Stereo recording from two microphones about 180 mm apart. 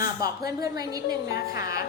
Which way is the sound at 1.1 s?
60° left (ahead or behind).